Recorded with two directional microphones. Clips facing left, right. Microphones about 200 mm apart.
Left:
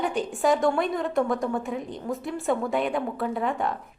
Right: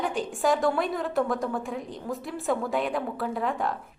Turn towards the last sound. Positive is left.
turn(degrees=0)  # may be behind; listen again after turning